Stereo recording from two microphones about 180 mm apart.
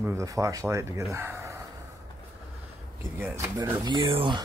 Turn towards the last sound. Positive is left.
turn(degrees=-25)  # may be behind; listen again after turning